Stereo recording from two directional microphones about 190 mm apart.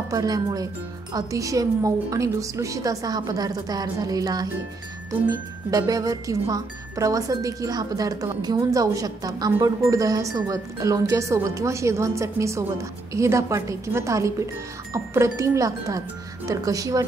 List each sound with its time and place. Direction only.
0.1 s a woman's voice: 20° right (ahead or behind)